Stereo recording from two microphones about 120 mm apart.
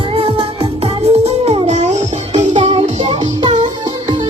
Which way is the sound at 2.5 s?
45° right (ahead or behind).